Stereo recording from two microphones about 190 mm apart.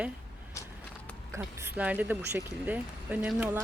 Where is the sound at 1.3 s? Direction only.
5° right (ahead or behind).